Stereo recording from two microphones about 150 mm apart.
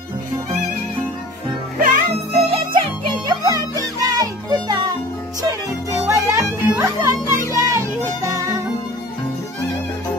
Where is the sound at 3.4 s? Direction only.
25° right (ahead or behind).